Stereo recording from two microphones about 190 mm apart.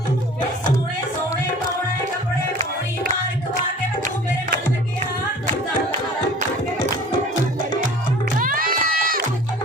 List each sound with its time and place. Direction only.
8.4 s music: 45° right (ahead or behind)